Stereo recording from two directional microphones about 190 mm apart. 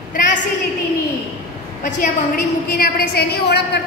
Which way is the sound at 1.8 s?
40° left (ahead or behind).